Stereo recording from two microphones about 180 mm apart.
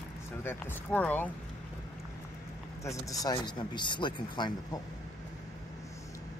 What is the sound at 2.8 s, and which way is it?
Speech, 20° left (ahead or behind).